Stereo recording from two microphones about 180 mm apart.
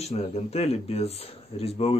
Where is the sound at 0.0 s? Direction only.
35° left (ahead or behind).